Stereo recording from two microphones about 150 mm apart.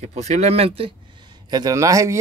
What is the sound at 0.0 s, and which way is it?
Speech, 50° right (ahead or behind).